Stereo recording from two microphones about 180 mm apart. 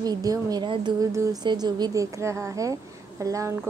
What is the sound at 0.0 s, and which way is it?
A woman's voice, 20° right (ahead or behind).